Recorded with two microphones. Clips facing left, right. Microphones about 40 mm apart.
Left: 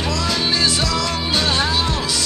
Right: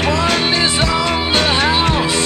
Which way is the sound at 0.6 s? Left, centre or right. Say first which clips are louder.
Right 4 dB; right.